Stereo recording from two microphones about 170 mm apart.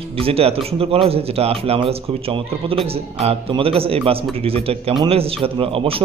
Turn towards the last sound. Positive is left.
turn(degrees=-35)  # may be behind; listen again after turning